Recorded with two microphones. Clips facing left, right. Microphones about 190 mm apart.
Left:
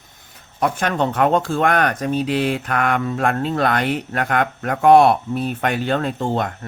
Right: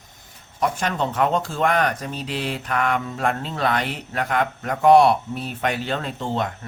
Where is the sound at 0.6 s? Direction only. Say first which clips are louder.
Left 3 dB; 55° left (ahead or behind).